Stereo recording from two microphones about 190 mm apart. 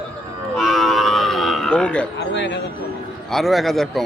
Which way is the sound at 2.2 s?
65° left (ahead or behind).